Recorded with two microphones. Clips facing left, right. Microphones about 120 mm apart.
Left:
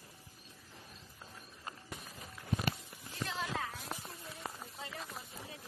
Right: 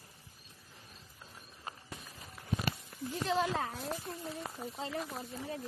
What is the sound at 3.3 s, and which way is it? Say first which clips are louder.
Speech: right 6 dB; 35° right (ahead or behind).